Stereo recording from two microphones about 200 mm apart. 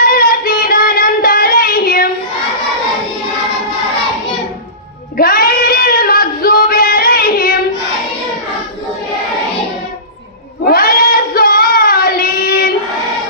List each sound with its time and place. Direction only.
0.0 s child singing: 45° left (ahead or behind)
5.1 s a sound: 45° left (ahead or behind)
10.7 s child singing: 50° left (ahead or behind)